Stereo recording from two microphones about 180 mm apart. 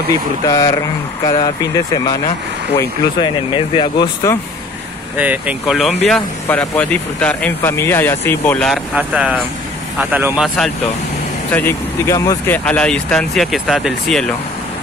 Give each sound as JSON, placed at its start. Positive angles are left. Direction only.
{"t": 0.5, "sound": "speech", "side_deg": 20}
{"t": 3.2, "sound": "speech", "side_deg": 25}
{"t": 5.1, "sound": "speech", "side_deg": -10}
{"t": 11.5, "sound": "speech", "side_deg": 15}